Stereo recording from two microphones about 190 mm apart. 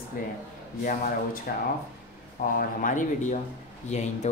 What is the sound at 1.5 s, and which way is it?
Speech, 45° left (ahead or behind).